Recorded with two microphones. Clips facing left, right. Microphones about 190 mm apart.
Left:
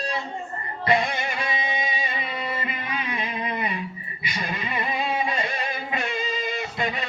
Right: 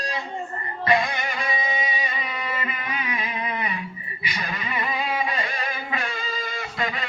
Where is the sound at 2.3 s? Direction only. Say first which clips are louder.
Left 1 dB; 30° left (ahead or behind).